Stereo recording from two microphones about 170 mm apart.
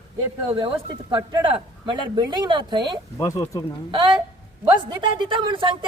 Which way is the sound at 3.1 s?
15° left (ahead or behind).